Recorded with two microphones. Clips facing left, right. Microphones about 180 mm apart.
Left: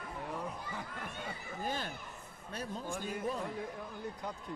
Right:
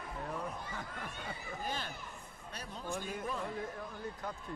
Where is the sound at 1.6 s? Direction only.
45° left (ahead or behind).